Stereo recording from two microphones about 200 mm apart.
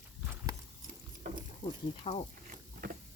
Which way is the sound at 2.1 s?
30° left (ahead or behind).